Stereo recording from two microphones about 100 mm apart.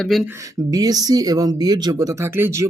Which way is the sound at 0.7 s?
40° right (ahead or behind).